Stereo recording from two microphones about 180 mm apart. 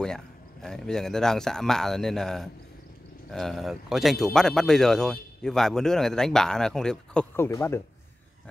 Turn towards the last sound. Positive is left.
turn(degrees=15)  # may be behind; listen again after turning